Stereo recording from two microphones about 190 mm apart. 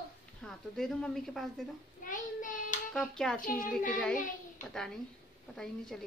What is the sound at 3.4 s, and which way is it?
Speech, 45° left (ahead or behind).